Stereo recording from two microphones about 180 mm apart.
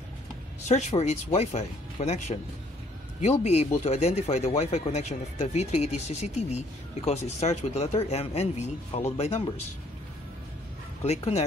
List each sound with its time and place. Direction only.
0.7 s speech: 40° left (ahead or behind)
11.1 s speech: 35° left (ahead or behind)